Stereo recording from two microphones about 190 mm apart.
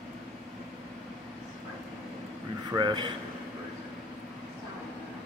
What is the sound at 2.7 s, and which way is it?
Speech, 20° right (ahead or behind).